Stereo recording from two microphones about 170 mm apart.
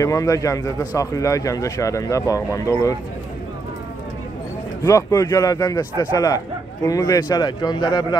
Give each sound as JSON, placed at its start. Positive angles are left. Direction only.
{"t": 0.0, "sound": "speech", "side_deg": 20}
{"t": 4.8, "sound": "speech", "side_deg": 20}